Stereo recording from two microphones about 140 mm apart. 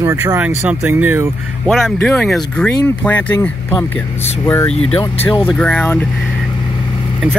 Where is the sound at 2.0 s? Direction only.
10° left (ahead or behind).